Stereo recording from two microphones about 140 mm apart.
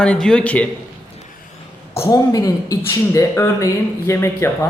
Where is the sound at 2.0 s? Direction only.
25° left (ahead or behind).